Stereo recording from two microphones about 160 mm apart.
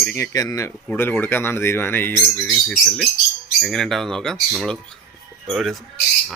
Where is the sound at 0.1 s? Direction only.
20° left (ahead or behind).